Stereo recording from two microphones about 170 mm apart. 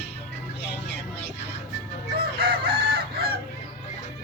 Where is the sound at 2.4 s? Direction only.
65° right (ahead or behind).